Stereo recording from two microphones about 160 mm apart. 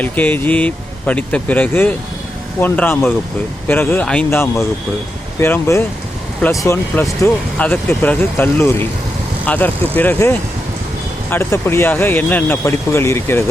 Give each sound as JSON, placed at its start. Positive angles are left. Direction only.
{"t": 0.0, "sound": "speech", "side_deg": 10}